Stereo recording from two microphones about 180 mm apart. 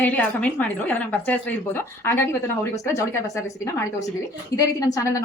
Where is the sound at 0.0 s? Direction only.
10° left (ahead or behind).